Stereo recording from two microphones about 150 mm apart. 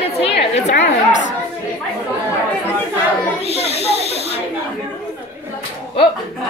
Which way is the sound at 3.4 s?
45° left (ahead or behind).